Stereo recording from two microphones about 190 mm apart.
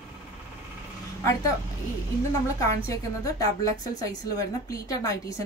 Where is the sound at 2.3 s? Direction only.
15° left (ahead or behind).